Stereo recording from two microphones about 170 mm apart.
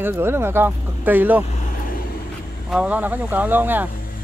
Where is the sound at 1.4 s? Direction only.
45° left (ahead or behind).